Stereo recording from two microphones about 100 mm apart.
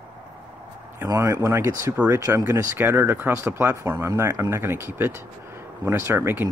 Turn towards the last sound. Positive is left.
turn(degrees=-25)  # may be behind; listen again after turning